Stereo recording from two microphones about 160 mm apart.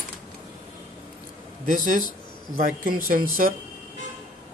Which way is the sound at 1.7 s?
55° right (ahead or behind).